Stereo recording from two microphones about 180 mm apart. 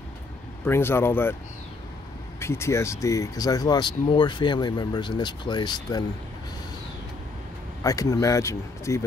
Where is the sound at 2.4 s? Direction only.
15° left (ahead or behind).